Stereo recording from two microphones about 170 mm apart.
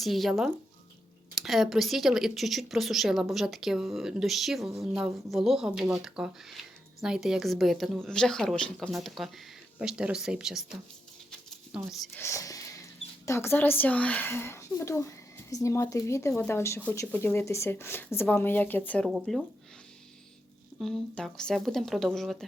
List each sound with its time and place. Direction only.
0.0 s speech: centre (ahead or behind)
11.3 s a sound: centre (ahead or behind)
12.1 s speech: 15° left (ahead or behind)
20.7 s speech: centre (ahead or behind)